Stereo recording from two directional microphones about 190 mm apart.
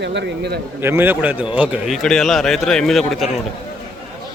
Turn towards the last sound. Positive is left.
turn(degrees=0)  # may be behind; listen again after turning